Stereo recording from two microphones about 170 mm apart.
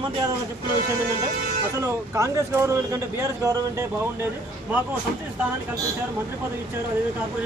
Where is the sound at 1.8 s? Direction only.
15° right (ahead or behind).